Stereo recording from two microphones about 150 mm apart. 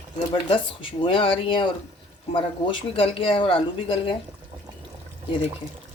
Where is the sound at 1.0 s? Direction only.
35° left (ahead or behind).